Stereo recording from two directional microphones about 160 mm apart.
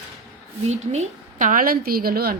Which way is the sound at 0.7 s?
45° right (ahead or behind).